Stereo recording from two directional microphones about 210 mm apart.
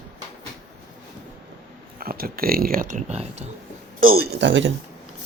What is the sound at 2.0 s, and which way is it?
Speech, 45° right (ahead or behind).